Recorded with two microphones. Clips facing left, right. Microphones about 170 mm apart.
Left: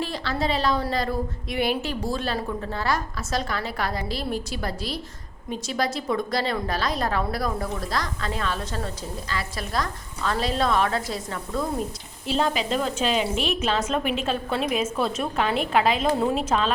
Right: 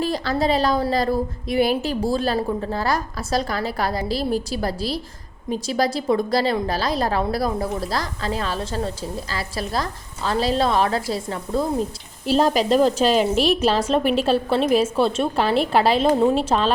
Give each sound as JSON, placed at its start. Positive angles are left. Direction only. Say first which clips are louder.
{"t": 0.0, "sound": "a woman's voice", "louder": "right 5 dB", "side_deg": -40}